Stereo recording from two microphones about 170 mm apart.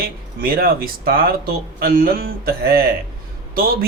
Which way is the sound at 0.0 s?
60° right (ahead or behind).